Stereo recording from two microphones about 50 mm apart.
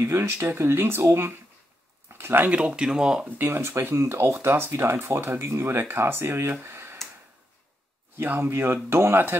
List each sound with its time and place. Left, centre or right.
0.0 s speech: right
2.0 s a sound: right
2.5 s speech: centre
3.3 s speech: right
5.4 s speech: right
6.6 s a sound: right
8.2 s speech: right